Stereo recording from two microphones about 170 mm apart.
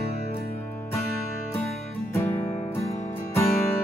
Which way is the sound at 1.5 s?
10° left (ahead or behind).